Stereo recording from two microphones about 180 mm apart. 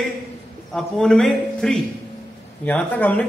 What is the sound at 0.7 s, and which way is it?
A man's voice, 5° left (ahead or behind).